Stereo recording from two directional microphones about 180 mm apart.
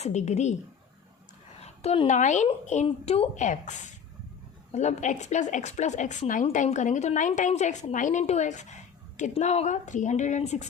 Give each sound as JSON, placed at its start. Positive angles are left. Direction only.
{"t": 0.0, "sound": "a woman's voice", "side_deg": 40}
{"t": 1.6, "sound": "a woman's voice", "side_deg": 35}